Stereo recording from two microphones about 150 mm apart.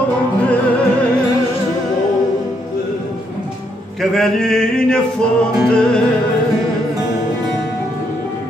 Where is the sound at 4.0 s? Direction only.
5° left (ahead or behind).